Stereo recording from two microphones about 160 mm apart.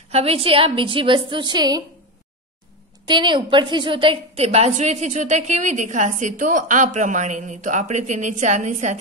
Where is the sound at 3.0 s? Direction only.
30° right (ahead or behind).